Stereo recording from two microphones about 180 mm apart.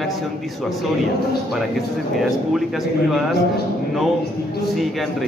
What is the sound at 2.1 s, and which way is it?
A man's voice, centre (ahead or behind).